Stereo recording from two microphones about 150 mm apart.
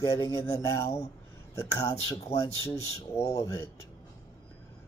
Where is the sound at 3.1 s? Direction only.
15° left (ahead or behind).